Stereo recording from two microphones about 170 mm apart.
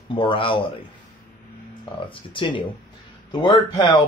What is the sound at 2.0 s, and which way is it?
Speech, 30° left (ahead or behind).